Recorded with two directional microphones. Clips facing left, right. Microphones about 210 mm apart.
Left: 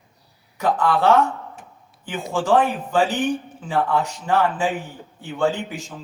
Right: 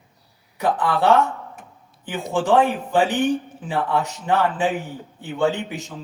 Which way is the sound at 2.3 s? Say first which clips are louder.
Right 1 dB; 15° right (ahead or behind).